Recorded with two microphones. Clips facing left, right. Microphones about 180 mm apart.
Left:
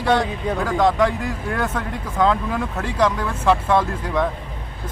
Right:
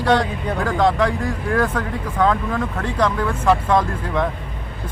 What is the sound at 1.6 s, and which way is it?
Speech, 20° left (ahead or behind).